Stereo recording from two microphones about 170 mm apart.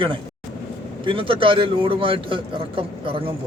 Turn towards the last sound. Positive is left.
turn(degrees=-30)  # may be behind; listen again after turning